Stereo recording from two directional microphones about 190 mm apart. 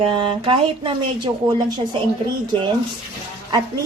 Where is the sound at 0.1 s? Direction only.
25° right (ahead or behind).